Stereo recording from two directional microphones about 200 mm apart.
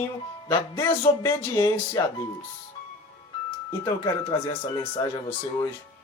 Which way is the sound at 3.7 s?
20° left (ahead or behind).